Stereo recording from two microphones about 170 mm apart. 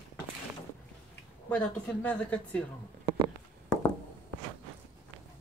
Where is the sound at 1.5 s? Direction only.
5° left (ahead or behind).